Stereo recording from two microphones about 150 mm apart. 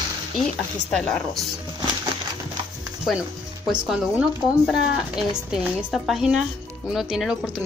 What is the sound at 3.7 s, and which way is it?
A woman's voice, 5° right (ahead or behind).